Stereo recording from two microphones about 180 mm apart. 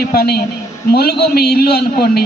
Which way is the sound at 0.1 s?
60° left (ahead or behind).